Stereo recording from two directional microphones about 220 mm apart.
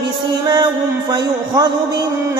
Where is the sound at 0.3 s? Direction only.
20° right (ahead or behind).